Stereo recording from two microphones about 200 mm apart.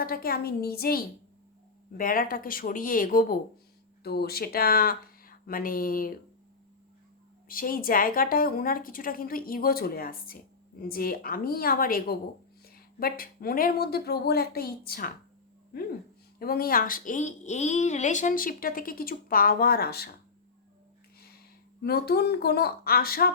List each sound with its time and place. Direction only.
0.0 s a woman's voice: 50° left (ahead or behind)
7.4 s a woman's voice: 45° left (ahead or behind)
16.4 s a woman's voice: 50° left (ahead or behind)
21.8 s a woman's voice: 50° left (ahead or behind)